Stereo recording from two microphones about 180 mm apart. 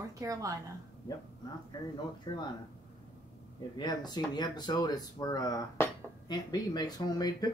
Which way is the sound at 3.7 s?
25° left (ahead or behind).